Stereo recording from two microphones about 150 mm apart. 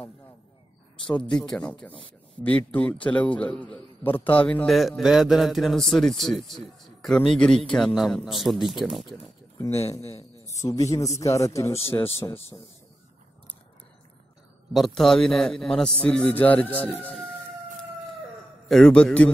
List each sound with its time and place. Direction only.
1.0 s a man's voice: 10° left (ahead or behind)
10.4 s a man's voice: 20° left (ahead or behind)
14.7 s a man's voice: centre (ahead or behind)
18.7 s a man's voice: 5° left (ahead or behind)